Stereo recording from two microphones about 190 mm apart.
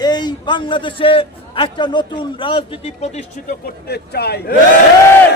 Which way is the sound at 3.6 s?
60° left (ahead or behind).